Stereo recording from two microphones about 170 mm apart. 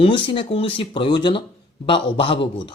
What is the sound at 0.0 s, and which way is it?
Speech, 30° left (ahead or behind).